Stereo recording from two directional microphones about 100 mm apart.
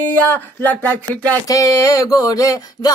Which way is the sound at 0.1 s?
15° left (ahead or behind).